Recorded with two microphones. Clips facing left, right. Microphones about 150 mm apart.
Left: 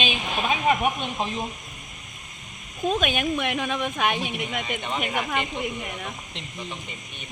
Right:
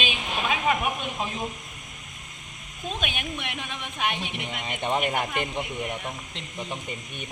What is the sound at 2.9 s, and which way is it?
Speech, 45° left (ahead or behind).